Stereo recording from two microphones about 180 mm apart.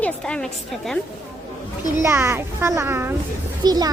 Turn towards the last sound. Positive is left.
turn(degrees=-20)  # may be behind; listen again after turning